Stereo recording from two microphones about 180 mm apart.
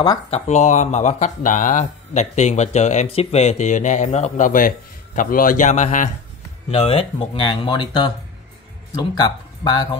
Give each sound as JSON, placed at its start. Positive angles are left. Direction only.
{"t": 0.3, "sound": "speech", "side_deg": 40}
{"t": 6.7, "sound": "speech", "side_deg": 30}